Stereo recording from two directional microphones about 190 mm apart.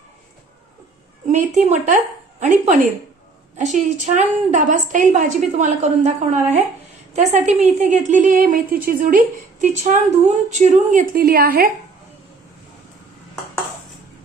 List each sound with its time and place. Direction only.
1.3 s a woman's voice: 40° right (ahead or behind)